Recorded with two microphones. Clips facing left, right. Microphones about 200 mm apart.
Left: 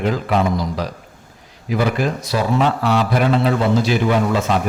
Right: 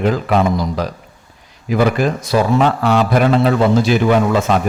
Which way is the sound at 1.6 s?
55° right (ahead or behind).